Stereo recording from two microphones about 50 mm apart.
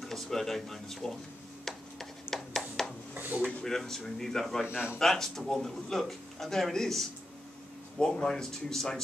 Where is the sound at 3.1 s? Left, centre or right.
Right.